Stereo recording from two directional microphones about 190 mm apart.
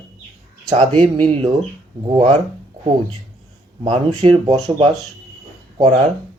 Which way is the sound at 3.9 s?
30° right (ahead or behind).